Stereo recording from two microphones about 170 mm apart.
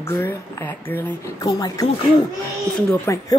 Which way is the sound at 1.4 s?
20° left (ahead or behind).